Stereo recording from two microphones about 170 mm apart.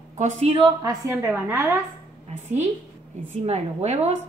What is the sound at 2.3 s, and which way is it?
Speech, 40° right (ahead or behind).